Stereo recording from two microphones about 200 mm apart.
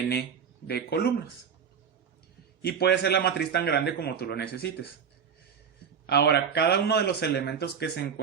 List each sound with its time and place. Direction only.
0.0 s a man's voice: 55° left (ahead or behind)
2.6 s speech: 55° left (ahead or behind)
6.1 s a man's voice: 55° left (ahead or behind)